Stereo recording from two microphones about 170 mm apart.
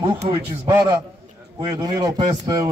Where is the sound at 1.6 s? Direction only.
25° right (ahead or behind).